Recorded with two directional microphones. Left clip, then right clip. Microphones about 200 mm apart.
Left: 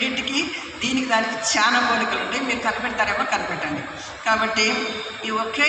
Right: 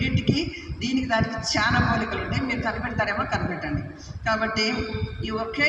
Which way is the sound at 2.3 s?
20° right (ahead or behind).